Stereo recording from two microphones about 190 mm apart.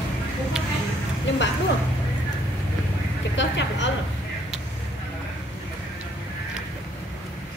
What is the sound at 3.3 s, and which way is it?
Speech, 70° left (ahead or behind).